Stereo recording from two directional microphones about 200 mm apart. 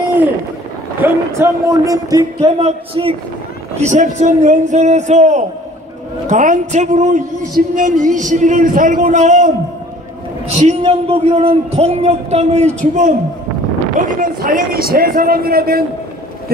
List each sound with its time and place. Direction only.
1.0 s speech: 15° right (ahead or behind)
2.6 s a man's voice: 30° right (ahead or behind)
10.6 s a man's voice: 30° right (ahead or behind)
14.2 s a man's voice: 45° right (ahead or behind)